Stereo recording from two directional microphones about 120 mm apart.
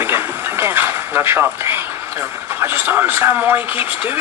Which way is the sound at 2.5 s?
20° right (ahead or behind).